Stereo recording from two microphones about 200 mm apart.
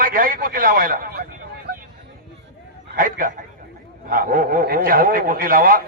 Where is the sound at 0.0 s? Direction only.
45° right (ahead or behind).